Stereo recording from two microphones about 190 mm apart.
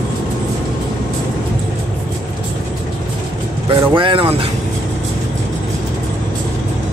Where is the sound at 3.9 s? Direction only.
25° right (ahead or behind).